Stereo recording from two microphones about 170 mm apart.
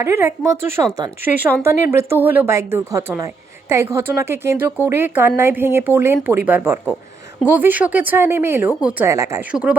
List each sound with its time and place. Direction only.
0.0 s a woman's voice: 15° right (ahead or behind)
9.5 s speech: 5° right (ahead or behind)